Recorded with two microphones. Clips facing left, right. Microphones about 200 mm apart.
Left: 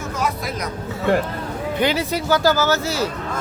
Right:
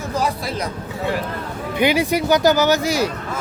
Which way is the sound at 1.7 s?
15° right (ahead or behind).